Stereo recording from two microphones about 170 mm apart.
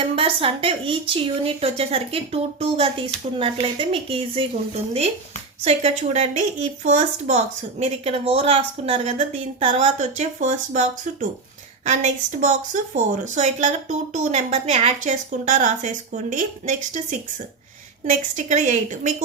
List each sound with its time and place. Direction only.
0.0 s a woman's voice: 35° right (ahead or behind)